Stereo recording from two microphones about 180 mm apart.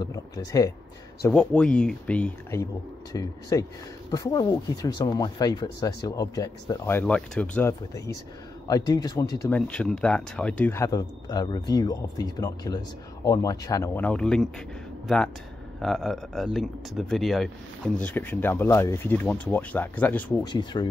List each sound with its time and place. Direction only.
0.0 s speech: 20° left (ahead or behind)
1.2 s speech: 5° left (ahead or behind)
3.1 s speech: 20° left (ahead or behind)
9.5 s speech: 5° left (ahead or behind)
20.4 s speech: 25° left (ahead or behind)